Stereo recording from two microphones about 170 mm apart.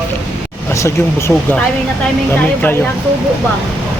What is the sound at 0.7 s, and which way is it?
Speech, 15° left (ahead or behind).